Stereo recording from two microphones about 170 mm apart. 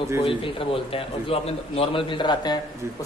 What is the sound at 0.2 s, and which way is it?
A man's voice, 30° left (ahead or behind).